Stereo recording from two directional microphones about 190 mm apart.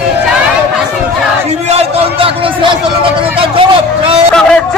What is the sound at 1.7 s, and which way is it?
Speech, 30° right (ahead or behind).